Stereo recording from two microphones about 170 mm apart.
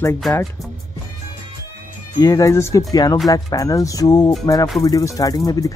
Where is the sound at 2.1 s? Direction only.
20° left (ahead or behind).